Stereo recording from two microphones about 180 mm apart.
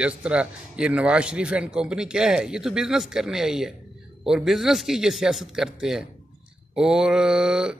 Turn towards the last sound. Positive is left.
turn(degrees=-5)  # may be behind; listen again after turning